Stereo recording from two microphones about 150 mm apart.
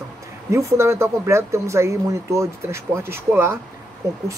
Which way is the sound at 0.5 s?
20° right (ahead or behind).